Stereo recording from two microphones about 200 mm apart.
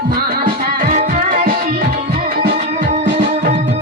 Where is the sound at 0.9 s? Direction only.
40° right (ahead or behind).